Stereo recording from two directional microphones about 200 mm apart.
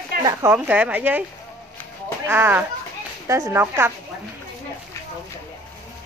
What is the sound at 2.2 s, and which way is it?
Speech, 10° right (ahead or behind).